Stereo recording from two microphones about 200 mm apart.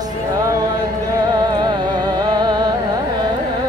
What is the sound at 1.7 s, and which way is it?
Music, 20° right (ahead or behind).